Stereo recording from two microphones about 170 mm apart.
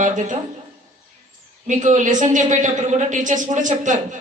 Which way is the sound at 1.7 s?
45° right (ahead or behind).